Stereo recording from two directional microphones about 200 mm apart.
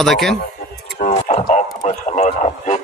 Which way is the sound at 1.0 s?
35° left (ahead or behind).